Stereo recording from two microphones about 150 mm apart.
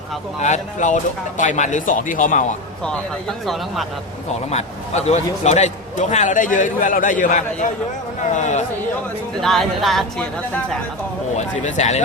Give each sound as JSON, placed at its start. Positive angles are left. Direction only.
{"t": 0.4, "sound": "a man's voice", "side_deg": 50}
{"t": 3.4, "sound": "speech", "side_deg": 0}
{"t": 4.4, "sound": "a man's voice", "side_deg": 45}
{"t": 9.4, "sound": "speech", "side_deg": 0}
{"t": 11.3, "sound": "speech", "side_deg": 50}